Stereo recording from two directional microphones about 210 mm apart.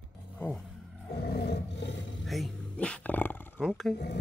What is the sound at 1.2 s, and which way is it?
Roar, 50° left (ahead or behind).